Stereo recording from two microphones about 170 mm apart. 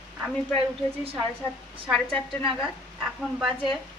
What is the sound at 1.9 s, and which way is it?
Speech, 5° left (ahead or behind).